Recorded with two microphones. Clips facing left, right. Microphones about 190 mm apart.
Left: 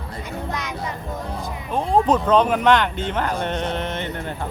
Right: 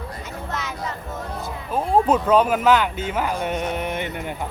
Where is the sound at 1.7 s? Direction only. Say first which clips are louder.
Even; 5° right (ahead or behind).